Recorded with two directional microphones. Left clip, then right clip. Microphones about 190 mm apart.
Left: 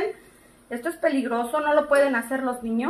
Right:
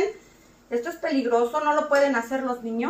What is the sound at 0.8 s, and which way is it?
Speech, 40° left (ahead or behind).